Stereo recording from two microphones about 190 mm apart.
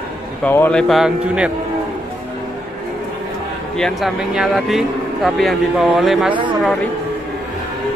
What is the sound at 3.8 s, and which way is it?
Speech, centre (ahead or behind).